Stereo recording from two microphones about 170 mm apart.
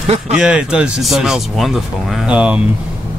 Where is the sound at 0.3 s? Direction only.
5° right (ahead or behind).